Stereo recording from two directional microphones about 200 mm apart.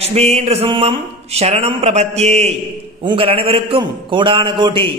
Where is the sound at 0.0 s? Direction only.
30° right (ahead or behind).